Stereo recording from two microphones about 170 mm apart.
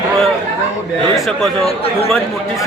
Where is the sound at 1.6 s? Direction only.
35° left (ahead or behind).